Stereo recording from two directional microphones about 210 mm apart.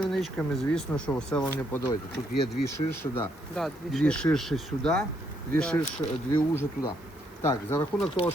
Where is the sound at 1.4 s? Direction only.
15° left (ahead or behind).